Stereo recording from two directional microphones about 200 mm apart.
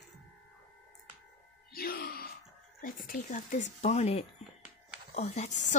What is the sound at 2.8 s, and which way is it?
Speech, 45° left (ahead or behind).